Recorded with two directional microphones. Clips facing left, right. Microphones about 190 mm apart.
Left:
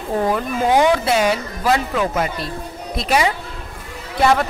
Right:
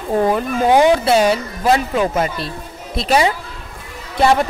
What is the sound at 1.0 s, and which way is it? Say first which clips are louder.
A woman's voice: right 3 dB; 30° right (ahead or behind).